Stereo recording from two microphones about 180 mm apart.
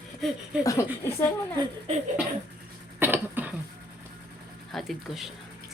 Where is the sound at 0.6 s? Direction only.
20° left (ahead or behind).